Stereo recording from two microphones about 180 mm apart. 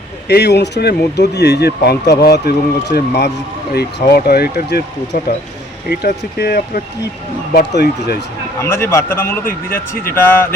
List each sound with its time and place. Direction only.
0.3 s speech: 65° left (ahead or behind)
7.8 s speech: 70° left (ahead or behind)
8.6 s a man's voice: 15° left (ahead or behind)